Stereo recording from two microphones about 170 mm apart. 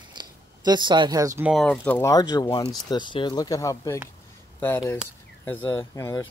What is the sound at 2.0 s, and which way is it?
Speech, 20° left (ahead or behind).